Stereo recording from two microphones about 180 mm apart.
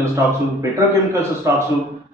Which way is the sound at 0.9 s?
15° right (ahead or behind).